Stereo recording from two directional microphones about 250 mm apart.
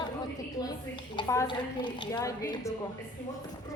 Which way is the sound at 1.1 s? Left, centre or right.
Centre.